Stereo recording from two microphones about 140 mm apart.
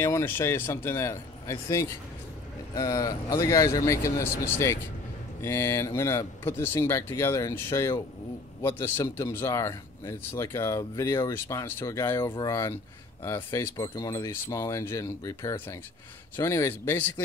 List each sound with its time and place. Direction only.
0.0 s speech: 15° left (ahead or behind)